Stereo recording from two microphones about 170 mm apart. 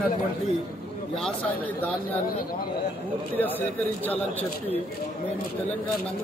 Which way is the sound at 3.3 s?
10° left (ahead or behind).